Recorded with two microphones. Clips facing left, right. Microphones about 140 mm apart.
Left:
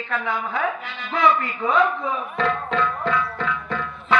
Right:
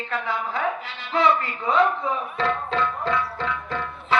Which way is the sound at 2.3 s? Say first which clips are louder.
Left 4 dB; 30° right (ahead or behind).